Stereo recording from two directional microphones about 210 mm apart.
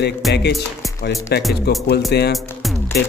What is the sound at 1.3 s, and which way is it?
Speech, 50° left (ahead or behind).